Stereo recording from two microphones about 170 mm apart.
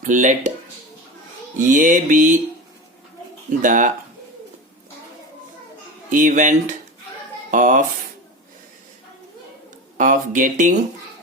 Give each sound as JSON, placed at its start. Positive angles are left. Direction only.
{"t": 0.0, "sound": "music", "side_deg": -50}
{"t": 1.5, "sound": "music", "side_deg": -50}
{"t": 3.6, "sound": "music", "side_deg": -50}
{"t": 6.1, "sound": "music", "side_deg": -50}
{"t": 10.0, "sound": "speech", "side_deg": -50}